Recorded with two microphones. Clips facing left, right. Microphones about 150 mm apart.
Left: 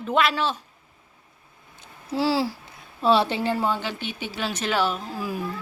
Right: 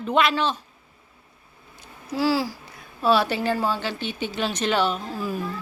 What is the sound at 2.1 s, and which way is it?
A child's voice, 25° left (ahead or behind).